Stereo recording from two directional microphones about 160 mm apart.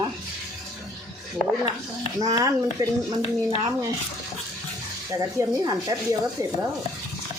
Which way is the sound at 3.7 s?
20° right (ahead or behind).